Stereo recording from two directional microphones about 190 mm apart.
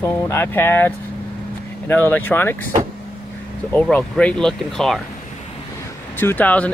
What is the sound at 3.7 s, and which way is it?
Speech, 5° left (ahead or behind).